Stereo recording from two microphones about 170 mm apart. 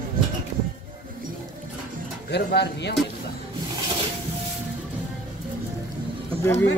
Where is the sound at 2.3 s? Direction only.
80° left.